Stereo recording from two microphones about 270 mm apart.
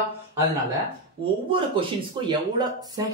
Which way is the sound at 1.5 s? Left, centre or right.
Centre.